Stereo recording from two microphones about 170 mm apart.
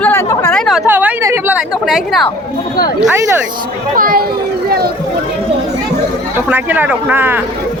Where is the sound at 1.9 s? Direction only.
Centre (ahead or behind).